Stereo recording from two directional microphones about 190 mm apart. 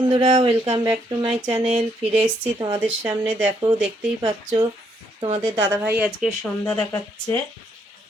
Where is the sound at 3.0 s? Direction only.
25° right (ahead or behind).